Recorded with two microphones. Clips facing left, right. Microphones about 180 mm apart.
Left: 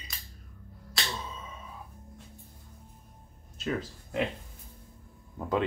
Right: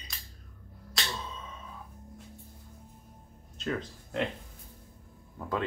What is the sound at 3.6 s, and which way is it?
Speech, 5° left (ahead or behind).